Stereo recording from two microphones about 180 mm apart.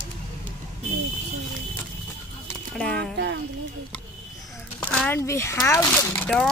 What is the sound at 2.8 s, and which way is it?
Speech, 5° left (ahead or behind).